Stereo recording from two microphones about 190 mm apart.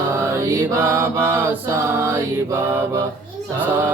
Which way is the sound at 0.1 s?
15° right (ahead or behind).